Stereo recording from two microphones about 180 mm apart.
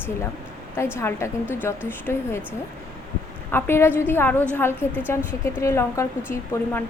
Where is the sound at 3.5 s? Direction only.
15° left (ahead or behind).